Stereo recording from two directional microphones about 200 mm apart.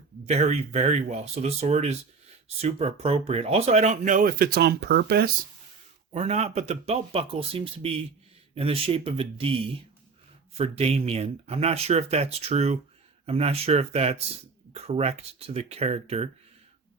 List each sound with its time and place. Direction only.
0.3 s speech: 35° right (ahead or behind); by 5.3 s 55° right (ahead or behind)
6.1 s speech: 35° right (ahead or behind)